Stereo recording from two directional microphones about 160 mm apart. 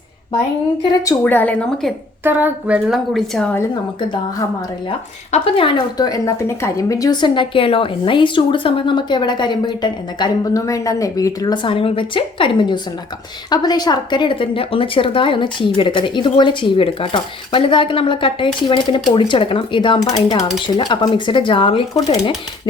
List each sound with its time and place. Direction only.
1.2 s speech: 10° left (ahead or behind)
2.2 s a woman's voice: 10° right (ahead or behind)
4.9 s speech: 35° left (ahead or behind)